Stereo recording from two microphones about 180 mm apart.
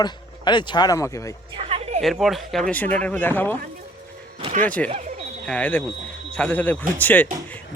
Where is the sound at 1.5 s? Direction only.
35° right (ahead or behind).